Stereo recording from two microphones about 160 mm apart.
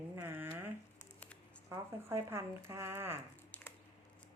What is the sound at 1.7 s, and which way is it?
A woman's voice, 15° right (ahead or behind).